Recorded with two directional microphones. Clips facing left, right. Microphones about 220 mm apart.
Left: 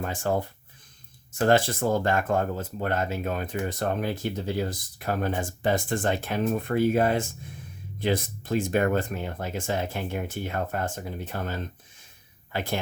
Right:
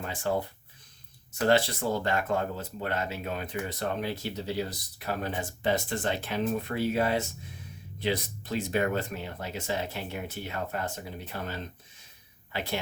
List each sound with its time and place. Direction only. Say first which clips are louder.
0.0 s speech: left 3 dB; 45° left (ahead or behind)
1.5 s speech: left 3 dB; 50° left (ahead or behind)